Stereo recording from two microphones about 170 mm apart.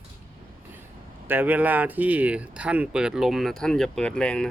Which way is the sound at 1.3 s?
10° right (ahead or behind).